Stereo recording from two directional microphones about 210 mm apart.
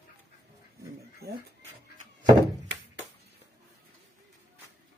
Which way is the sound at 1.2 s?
50° right (ahead or behind).